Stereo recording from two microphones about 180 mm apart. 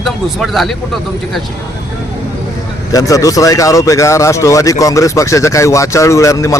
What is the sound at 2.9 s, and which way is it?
Speech, 20° left (ahead or behind).